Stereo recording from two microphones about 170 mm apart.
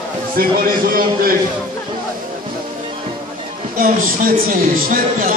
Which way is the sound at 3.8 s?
55° right (ahead or behind).